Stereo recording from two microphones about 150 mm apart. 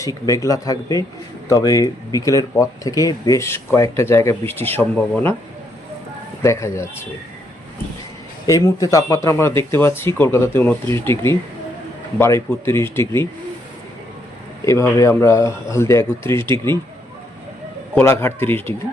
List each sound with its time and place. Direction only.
0.0 s speech: 20° left (ahead or behind)
6.4 s speech: 20° left (ahead or behind)
8.4 s speech: 20° left (ahead or behind)
14.6 s speech: 20° left (ahead or behind)
17.9 s speech: 15° left (ahead or behind)